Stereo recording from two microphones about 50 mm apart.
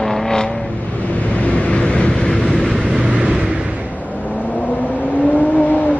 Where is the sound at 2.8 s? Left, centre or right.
Right.